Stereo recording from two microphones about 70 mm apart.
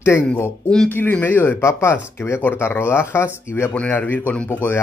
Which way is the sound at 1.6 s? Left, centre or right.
Left.